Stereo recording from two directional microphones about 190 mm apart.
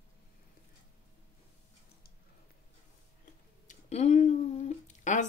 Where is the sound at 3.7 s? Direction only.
35° left (ahead or behind).